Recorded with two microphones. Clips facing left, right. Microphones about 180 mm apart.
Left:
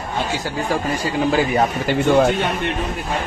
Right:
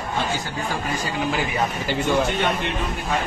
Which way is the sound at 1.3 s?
35° left (ahead or behind).